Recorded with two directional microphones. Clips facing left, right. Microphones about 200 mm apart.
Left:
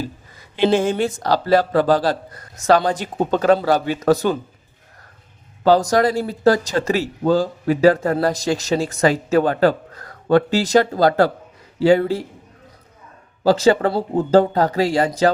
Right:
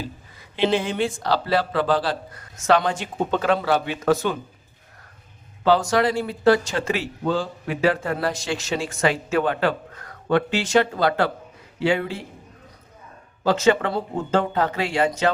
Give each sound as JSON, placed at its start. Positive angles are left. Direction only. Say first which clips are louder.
{"t": 0.5, "sound": "a man's voice", "louder": "left 5 dB", "side_deg": 45}
{"t": 5.6, "sound": "a man's voice", "louder": "left 4 dB", "side_deg": 40}
{"t": 13.4, "sound": "a man's voice", "louder": "left 4 dB", "side_deg": 35}